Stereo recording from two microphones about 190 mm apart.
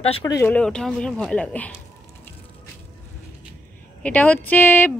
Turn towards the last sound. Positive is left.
turn(degrees=10)  # may be behind; listen again after turning